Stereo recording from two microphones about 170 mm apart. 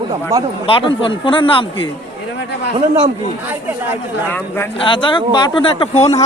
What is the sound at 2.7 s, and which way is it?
Speech, 40° right (ahead or behind).